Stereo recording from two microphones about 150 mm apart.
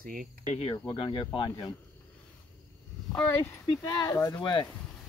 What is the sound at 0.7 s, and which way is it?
Speech, 30° left (ahead or behind).